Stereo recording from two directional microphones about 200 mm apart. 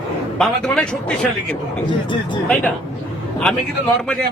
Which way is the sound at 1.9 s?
25° left (ahead or behind).